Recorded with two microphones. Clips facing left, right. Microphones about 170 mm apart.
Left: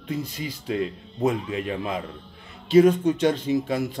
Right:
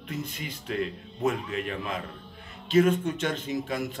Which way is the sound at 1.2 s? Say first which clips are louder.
Left 4 dB; 30° left (ahead or behind).